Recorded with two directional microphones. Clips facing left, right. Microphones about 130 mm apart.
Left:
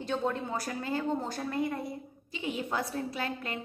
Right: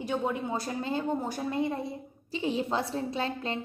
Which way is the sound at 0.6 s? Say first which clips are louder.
Right 2 dB; 25° right (ahead or behind).